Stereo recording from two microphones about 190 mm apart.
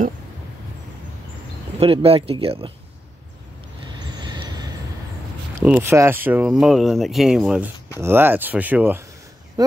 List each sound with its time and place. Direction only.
1.8 s speech: 30° right (ahead or behind)
3.8 s vehicle: 20° right (ahead or behind)
5.6 s speech: 10° right (ahead or behind)